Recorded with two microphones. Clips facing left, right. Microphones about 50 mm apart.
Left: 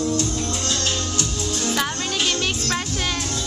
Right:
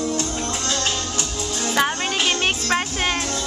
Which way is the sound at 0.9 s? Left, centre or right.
Centre.